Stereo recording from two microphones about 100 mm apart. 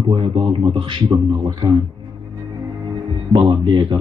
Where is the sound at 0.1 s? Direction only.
55° right (ahead or behind).